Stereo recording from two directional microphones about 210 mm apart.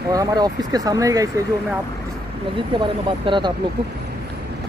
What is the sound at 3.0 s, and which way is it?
Speech, 25° right (ahead or behind).